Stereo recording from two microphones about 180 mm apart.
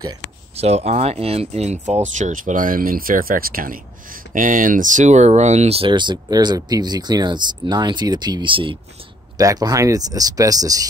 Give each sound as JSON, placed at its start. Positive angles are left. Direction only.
{"t": 0.6, "sound": "speech", "side_deg": -35}